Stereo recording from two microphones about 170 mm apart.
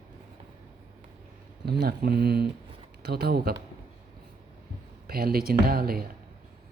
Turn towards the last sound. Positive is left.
turn(degrees=-65)  # may be behind; listen again after turning